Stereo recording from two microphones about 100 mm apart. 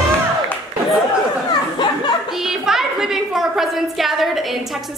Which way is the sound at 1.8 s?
45° left (ahead or behind).